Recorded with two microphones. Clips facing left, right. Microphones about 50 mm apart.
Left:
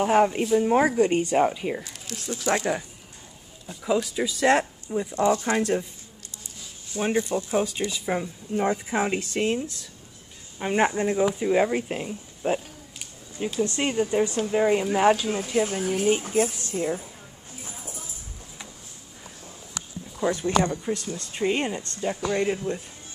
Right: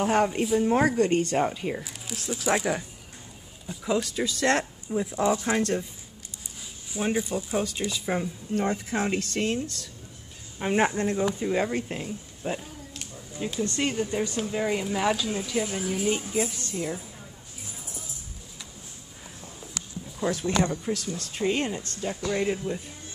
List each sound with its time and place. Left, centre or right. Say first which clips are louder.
0.0 s speech: left 3 dB; centre
4.8 s speech: right 1 dB; centre
5.6 s speech: left 2 dB; centre
7.2 s speech: left 3 dB; centre
7.5 s speech: left 2 dB; centre
10.9 s speech: left 3 dB; centre
12.5 s a sound: left 3 dB; centre
13.6 s speech: left 3 dB; centre
15.2 s speech: left 4 dB; left
16.5 s speech: left 4 dB; centre
17.6 s music: left 3 dB; left
20.2 s speech: left 3 dB; left
20.6 s speech: left 1 dB; centre